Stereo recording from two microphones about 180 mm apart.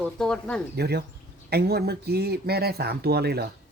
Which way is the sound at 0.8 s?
65° right (ahead or behind).